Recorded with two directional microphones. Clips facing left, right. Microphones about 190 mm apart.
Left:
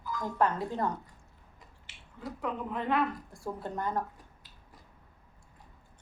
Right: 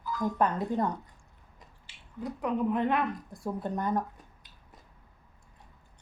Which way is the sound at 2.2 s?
20° right (ahead or behind).